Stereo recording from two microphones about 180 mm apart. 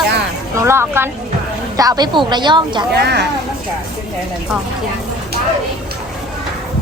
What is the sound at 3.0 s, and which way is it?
Speech, 65° right (ahead or behind).